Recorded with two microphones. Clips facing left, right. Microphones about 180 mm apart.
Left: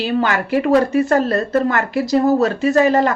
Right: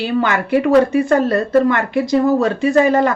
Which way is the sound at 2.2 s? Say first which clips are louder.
Even; 40° left (ahead or behind).